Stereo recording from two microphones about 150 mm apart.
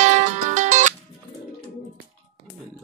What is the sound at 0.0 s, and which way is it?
Music, 55° right (ahead or behind).